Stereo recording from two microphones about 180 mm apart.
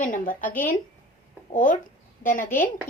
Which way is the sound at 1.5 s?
45° left (ahead or behind).